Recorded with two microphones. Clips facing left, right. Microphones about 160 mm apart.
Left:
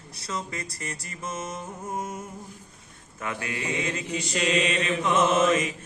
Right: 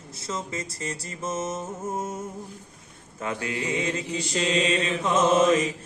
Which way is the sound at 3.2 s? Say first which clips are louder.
Right 3 dB; 25° right (ahead or behind).